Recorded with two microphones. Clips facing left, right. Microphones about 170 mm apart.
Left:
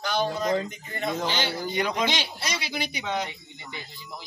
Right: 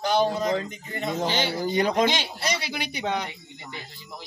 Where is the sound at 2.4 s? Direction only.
55° right (ahead or behind).